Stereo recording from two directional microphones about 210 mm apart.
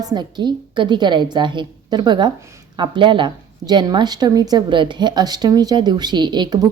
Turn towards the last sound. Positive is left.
turn(degrees=-20)  # may be behind; listen again after turning